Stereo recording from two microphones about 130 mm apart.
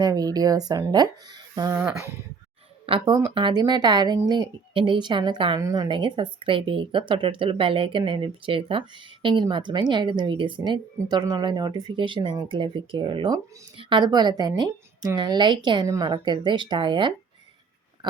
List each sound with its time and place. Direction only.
0.0 s speech: 30° right (ahead or behind)
2.8 s speech: 45° right (ahead or behind)
18.0 s a sound: 35° right (ahead or behind)